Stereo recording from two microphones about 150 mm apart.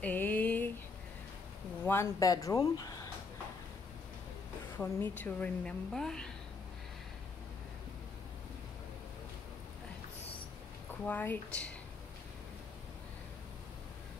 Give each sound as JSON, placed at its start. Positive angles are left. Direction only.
{"t": 0.0, "sound": "a sound", "side_deg": 10}
{"t": 1.9, "sound": "speech", "side_deg": 20}
{"t": 4.7, "sound": "a woman's voice", "side_deg": 15}
{"t": 11.1, "sound": "a woman's voice", "side_deg": 10}